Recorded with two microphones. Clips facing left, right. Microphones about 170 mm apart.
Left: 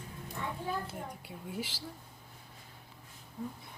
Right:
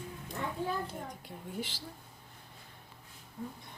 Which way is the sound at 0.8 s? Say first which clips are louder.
Even; 10° left (ahead or behind).